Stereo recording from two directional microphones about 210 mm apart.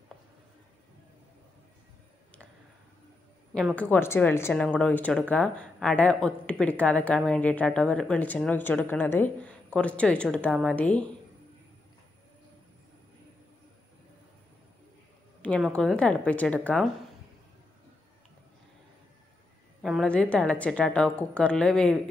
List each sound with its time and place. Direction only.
3.5 s a woman's voice: 5° left (ahead or behind)
15.4 s a woman's voice: 5° left (ahead or behind)
19.8 s a woman's voice: centre (ahead or behind)